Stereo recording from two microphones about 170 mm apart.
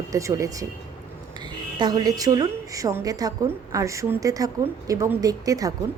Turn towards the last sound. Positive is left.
turn(degrees=-20)  # may be behind; listen again after turning